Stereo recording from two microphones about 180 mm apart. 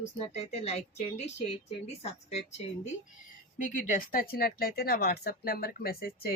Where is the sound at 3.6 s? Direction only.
45° left (ahead or behind).